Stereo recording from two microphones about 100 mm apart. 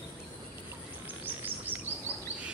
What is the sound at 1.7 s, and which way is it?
Bird, 15° right (ahead or behind).